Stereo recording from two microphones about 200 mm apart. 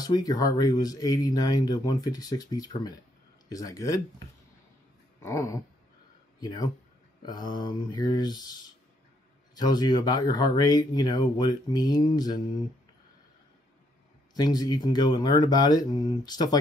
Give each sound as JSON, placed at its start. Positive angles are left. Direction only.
{"t": 0.0, "sound": "speech", "side_deg": 20}
{"t": 5.2, "sound": "speech", "side_deg": 15}
{"t": 14.3, "sound": "speech", "side_deg": 20}